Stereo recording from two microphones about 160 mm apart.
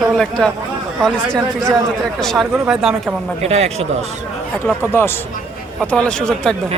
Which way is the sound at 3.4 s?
40° right (ahead or behind).